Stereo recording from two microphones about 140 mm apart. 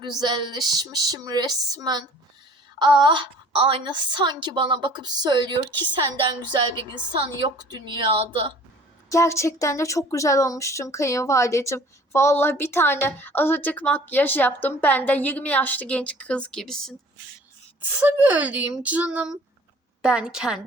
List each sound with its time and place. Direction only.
0.2 s a woman's voice: 30° right (ahead or behind)
9.0 s speech: 20° left (ahead or behind); by 16.9 s 5° left (ahead or behind)
17.7 s a woman's voice: 10° right (ahead or behind)